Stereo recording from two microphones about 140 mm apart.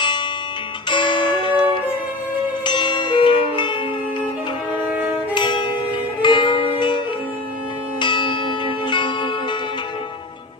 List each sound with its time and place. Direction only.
0.0 s music: 35° left (ahead or behind)
2.6 s bell: 35° left (ahead or behind)
5.3 s music: 35° left (ahead or behind)
7.9 s church bell: 35° left (ahead or behind)